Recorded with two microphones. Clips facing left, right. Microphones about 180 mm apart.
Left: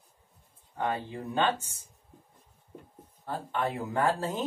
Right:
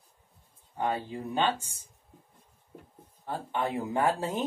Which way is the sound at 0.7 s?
15° right (ahead or behind).